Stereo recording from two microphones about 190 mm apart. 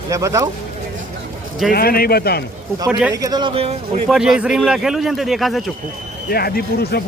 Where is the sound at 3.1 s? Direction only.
20° right (ahead or behind).